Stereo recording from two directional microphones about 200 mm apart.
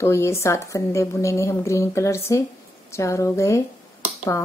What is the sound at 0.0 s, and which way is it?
Speech, 15° left (ahead or behind).